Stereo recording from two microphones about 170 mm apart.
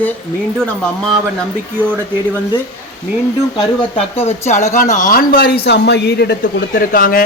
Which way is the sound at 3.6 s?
35° left (ahead or behind).